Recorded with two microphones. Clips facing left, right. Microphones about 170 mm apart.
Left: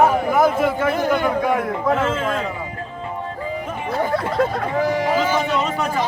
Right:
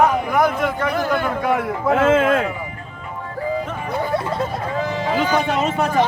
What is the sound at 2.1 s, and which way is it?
Speech, 60° right (ahead or behind).